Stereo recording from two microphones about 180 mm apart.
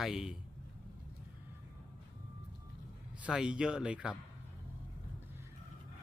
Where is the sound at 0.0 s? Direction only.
5° right (ahead or behind).